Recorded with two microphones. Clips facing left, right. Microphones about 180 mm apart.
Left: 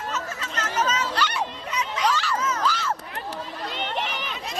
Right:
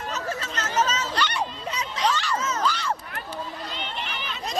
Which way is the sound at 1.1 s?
5° left (ahead or behind).